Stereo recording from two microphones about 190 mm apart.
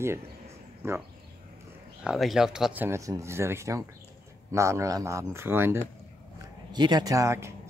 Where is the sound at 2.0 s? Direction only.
Centre (ahead or behind).